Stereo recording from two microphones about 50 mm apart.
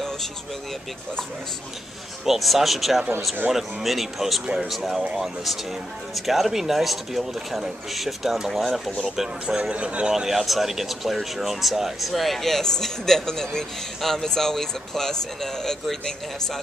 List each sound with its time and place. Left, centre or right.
2.2 s speech: centre
9.6 s a man's voice: right
10.1 s speech: centre